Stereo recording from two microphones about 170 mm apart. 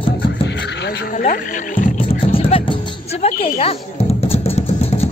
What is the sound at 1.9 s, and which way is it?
Music, 35° left (ahead or behind).